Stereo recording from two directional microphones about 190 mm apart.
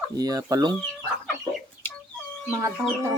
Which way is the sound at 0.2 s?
20° right (ahead or behind).